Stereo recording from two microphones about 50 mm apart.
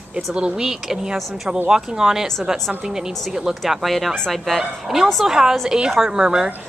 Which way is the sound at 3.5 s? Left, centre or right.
Centre.